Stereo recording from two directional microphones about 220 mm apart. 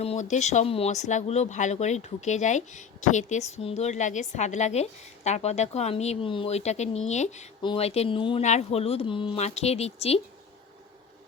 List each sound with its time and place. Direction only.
0.0 s speech: 30° left (ahead or behind)